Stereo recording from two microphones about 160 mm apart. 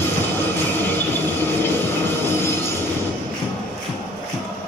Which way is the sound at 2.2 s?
15° left (ahead or behind).